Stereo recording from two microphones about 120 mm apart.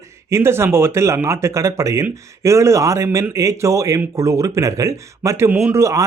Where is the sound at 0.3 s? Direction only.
20° right (ahead or behind).